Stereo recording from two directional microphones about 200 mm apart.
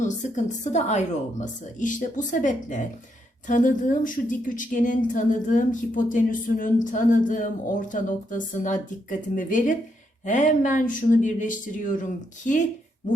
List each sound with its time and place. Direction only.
0.0 s speech: 35° left (ahead or behind)